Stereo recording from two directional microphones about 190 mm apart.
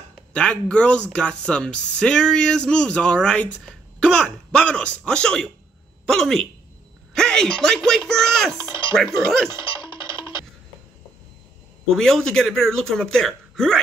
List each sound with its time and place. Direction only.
0.3 s speech: 5° left (ahead or behind)
8.8 s music: 25° left (ahead or behind)
11.9 s speech: centre (ahead or behind)